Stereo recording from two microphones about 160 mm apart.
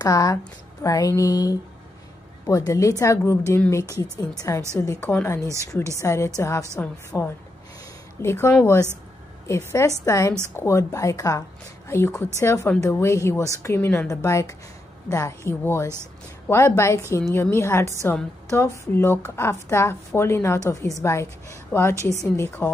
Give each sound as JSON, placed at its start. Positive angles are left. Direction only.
{"t": 0.0, "sound": "a woman's voice", "side_deg": 20}